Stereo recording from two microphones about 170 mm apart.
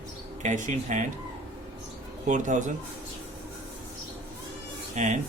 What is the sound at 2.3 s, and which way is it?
Speech, 45° right (ahead or behind).